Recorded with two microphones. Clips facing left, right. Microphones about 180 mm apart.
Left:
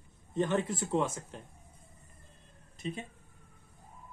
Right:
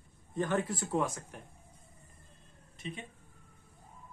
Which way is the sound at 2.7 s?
35° left (ahead or behind).